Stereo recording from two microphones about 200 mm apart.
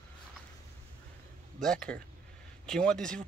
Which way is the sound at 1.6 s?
5° left (ahead or behind).